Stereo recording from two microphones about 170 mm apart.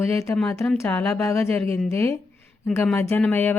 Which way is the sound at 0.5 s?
5° left (ahead or behind).